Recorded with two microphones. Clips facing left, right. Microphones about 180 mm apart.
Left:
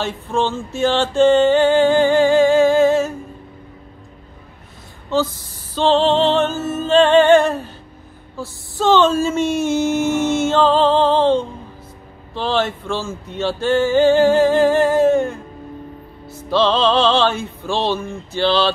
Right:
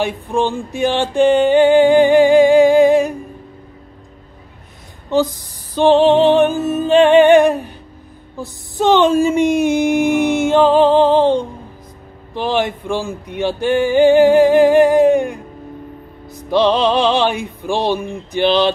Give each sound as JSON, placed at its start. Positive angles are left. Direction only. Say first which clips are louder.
{"t": 0.0, "sound": "music", "louder": "right 3 dB", "side_deg": -15}
{"t": 5.1, "sound": "speech", "louder": "right 3 dB", "side_deg": -15}